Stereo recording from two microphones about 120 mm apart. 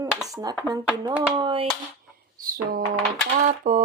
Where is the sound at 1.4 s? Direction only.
45° right (ahead or behind).